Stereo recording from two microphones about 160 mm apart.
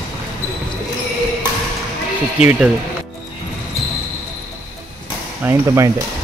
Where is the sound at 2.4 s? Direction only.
10° right (ahead or behind).